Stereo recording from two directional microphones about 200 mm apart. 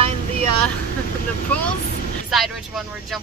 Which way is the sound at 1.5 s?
10° left (ahead or behind).